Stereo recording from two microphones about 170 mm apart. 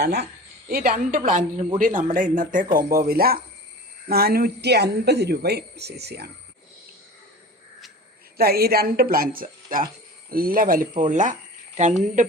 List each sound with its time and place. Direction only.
0.0 s speech: 75° right (ahead or behind)
0.7 s a woman's voice: 60° right (ahead or behind)
8.4 s a woman's voice: 65° right (ahead or behind); by 12.3 s 45° right (ahead or behind)